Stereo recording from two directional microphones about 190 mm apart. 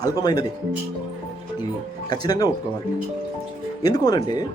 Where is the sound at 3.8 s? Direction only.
20° left (ahead or behind).